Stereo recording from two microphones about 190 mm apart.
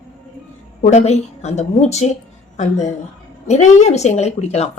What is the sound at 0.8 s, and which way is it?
Speech, 35° left (ahead or behind).